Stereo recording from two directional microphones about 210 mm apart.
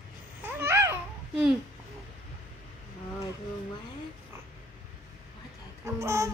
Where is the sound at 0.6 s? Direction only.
10° right (ahead or behind).